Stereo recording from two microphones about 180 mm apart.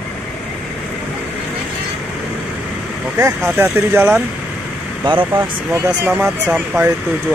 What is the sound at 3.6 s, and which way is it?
Speech, 10° right (ahead or behind).